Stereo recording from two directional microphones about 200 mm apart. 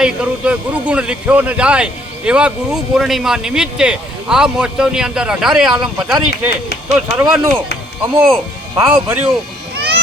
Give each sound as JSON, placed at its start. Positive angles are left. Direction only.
{"t": 0.0, "sound": "speech", "side_deg": -5}
{"t": 8.7, "sound": "speech", "side_deg": -15}
{"t": 9.7, "sound": "a sound", "side_deg": -55}